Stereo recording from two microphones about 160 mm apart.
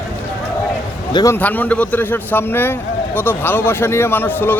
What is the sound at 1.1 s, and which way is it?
Speech, 25° left (ahead or behind).